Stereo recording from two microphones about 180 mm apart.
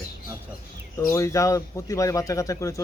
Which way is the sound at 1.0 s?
15° left (ahead or behind).